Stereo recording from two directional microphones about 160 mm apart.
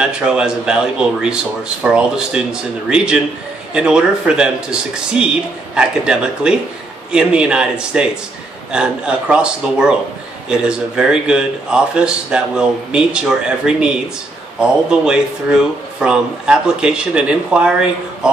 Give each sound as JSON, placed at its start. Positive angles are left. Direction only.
{"t": 0.0, "sound": "speech", "side_deg": -5}
{"t": 14.6, "sound": "speech", "side_deg": -5}